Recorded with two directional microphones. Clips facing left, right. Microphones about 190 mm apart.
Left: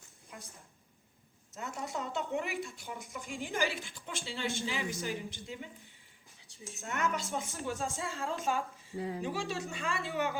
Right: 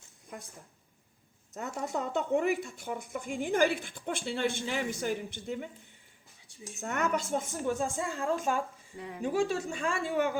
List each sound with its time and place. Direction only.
1.5 s a woman's voice: 45° right (ahead or behind)
6.8 s a woman's voice: 50° right (ahead or behind)
9.0 s speech: 35° left (ahead or behind)
9.2 s a woman's voice: 50° right (ahead or behind)